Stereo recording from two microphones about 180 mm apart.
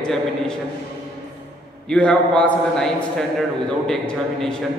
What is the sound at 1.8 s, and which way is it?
A man's voice, 5° left (ahead or behind).